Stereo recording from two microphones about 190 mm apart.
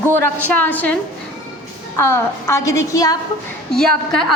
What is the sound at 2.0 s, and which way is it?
A woman's voice, 15° left (ahead or behind).